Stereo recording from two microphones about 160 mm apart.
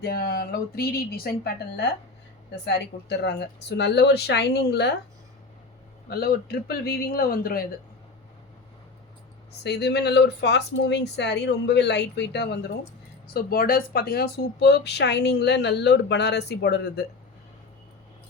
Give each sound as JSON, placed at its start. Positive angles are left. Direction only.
{"t": 0.0, "sound": "a man's voice", "side_deg": 75}
{"t": 2.6, "sound": "speech", "side_deg": 90}
{"t": 6.1, "sound": "a man's voice", "side_deg": 75}
{"t": 9.6, "sound": "speech", "side_deg": 90}
{"t": 13.2, "sound": "speech", "side_deg": 70}